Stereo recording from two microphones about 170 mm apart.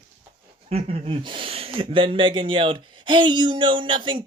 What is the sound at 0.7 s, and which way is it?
Speech, 35° right (ahead or behind).